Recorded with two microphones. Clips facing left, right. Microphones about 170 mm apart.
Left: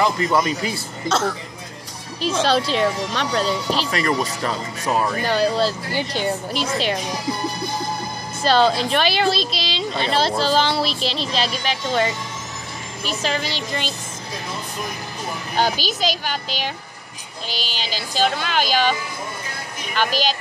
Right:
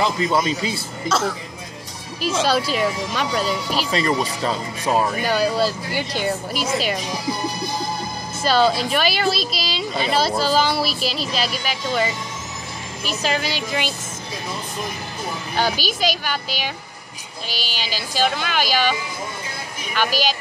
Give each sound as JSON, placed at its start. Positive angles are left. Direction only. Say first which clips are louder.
{"t": 0.0, "sound": "speech", "louder": "left 1 dB", "side_deg": -20}
{"t": 2.4, "sound": "a woman's voice", "louder": "left 2 dB", "side_deg": -10}
{"t": 3.9, "sound": "speech", "louder": "right 1 dB", "side_deg": -20}
{"t": 5.2, "sound": "a woman's voice", "louder": "even", "side_deg": -10}
{"t": 8.5, "sound": "a woman's voice", "louder": "left 1 dB", "side_deg": -10}
{"t": 13.3, "sound": "a woman's voice", "louder": "right 2 dB", "side_deg": -5}
{"t": 15.8, "sound": "a woman's voice", "louder": "even", "side_deg": -10}
{"t": 20.1, "sound": "a woman's voice", "louder": "even", "side_deg": -10}